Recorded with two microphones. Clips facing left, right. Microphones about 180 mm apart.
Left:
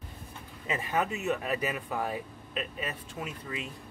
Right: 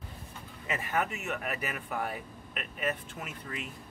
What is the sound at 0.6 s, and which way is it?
Speech, 20° left (ahead or behind).